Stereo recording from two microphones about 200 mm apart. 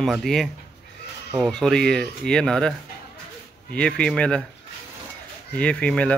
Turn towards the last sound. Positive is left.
turn(degrees=5)  # may be behind; listen again after turning